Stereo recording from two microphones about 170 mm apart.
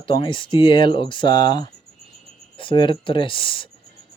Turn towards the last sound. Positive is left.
turn(degrees=30)  # may be behind; listen again after turning